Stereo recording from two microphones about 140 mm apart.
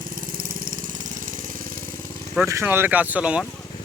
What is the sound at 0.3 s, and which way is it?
Engine, 90° right.